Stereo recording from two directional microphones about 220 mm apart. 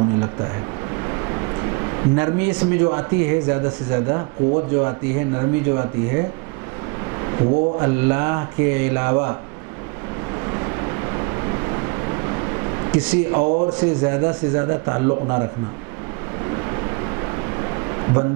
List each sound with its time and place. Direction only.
0.9 s speech: 20° right (ahead or behind)
10.4 s vehicle: 20° right (ahead or behind)
13.0 s speech: 10° right (ahead or behind)
13.4 s speech: 35° right (ahead or behind)
13.7 s speech: 10° right (ahead or behind)
16.4 s a sound: 20° right (ahead or behind)